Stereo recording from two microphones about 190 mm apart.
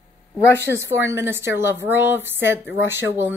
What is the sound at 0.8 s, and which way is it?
A woman's voice, 15° right (ahead or behind).